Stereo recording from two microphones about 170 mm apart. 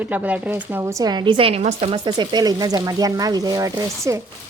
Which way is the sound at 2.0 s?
25° right (ahead or behind).